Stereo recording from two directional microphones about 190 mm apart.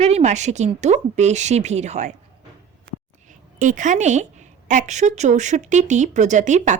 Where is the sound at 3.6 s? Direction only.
40° right (ahead or behind).